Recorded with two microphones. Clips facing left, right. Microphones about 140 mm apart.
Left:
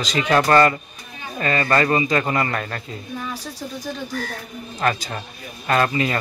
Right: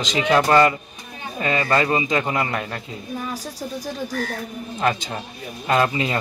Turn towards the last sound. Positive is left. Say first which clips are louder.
# even
turn(degrees=-15)  # may be behind; listen again after turning